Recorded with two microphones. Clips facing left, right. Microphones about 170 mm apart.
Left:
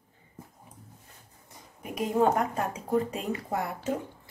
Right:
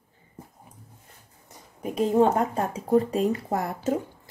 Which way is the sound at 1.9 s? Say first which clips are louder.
Right 4 dB; 30° right (ahead or behind).